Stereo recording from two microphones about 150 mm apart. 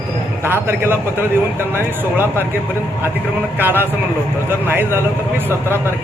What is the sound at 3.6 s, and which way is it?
Speech, 15° right (ahead or behind).